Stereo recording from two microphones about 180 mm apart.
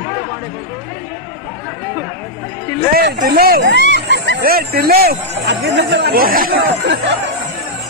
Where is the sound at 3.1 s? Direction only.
55° right (ahead or behind).